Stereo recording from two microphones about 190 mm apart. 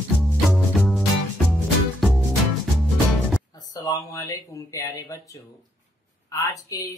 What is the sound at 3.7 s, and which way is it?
Speech, 20° left (ahead or behind).